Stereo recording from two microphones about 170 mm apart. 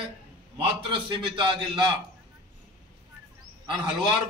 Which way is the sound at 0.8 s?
30° right (ahead or behind).